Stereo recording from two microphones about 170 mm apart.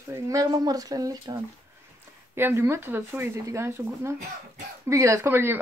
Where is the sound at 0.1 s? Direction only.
20° right (ahead or behind).